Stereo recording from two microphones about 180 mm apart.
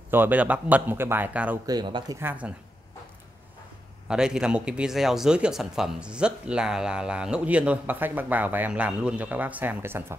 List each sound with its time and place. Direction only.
0.1 s speech: 10° right (ahead or behind)
1.7 s speech: 25° right (ahead or behind)
2.1 s speech: 10° right (ahead or behind)
4.1 s speech: 5° right (ahead or behind)